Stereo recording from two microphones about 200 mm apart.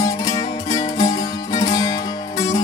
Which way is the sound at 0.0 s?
15° left (ahead or behind).